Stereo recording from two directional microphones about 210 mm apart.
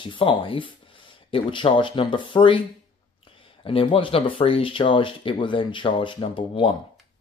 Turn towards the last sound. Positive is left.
turn(degrees=20)  # may be behind; listen again after turning